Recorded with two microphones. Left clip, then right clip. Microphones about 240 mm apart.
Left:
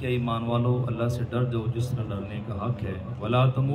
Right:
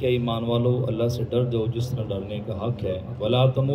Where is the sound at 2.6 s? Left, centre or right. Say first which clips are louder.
Right 5 dB; left.